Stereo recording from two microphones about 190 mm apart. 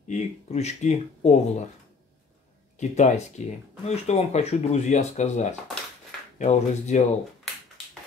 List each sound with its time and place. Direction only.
0.1 s speech: 35° left (ahead or behind)
2.8 s speech: 35° left (ahead or behind)